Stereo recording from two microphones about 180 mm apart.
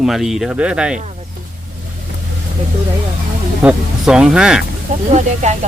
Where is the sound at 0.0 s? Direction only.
Centre (ahead or behind).